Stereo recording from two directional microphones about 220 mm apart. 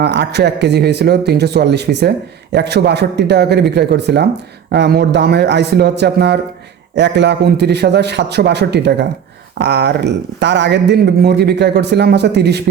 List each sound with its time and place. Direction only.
0.0 s speech: 50° right (ahead or behind)